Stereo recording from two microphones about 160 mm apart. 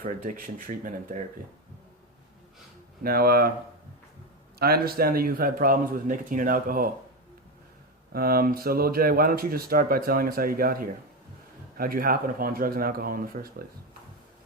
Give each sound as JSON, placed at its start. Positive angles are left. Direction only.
{"t": 0.0, "sound": "speech", "side_deg": -60}
{"t": 3.0, "sound": "speech", "side_deg": -65}
{"t": 4.6, "sound": "speech", "side_deg": -75}
{"t": 8.1, "sound": "speech", "side_deg": -65}